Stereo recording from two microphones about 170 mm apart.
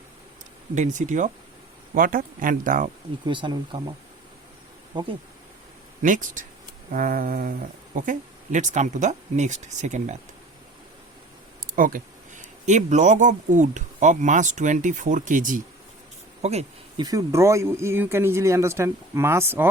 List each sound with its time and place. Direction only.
0.8 s speech: 45° right (ahead or behind)
3.2 s speech: 30° right (ahead or behind)
4.9 s speech: 25° right (ahead or behind)
6.0 s speech: 50° right (ahead or behind)
6.9 s a sound: 55° right (ahead or behind)
7.9 s speech: 50° right (ahead or behind)
11.8 s speech: 55° right (ahead or behind)
16.4 s speech: 40° right (ahead or behind)
17.0 s speech: 20° right (ahead or behind)